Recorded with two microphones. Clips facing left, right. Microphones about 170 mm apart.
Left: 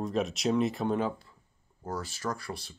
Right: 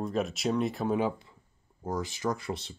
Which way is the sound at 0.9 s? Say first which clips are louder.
Right 2 dB; 10° right (ahead or behind).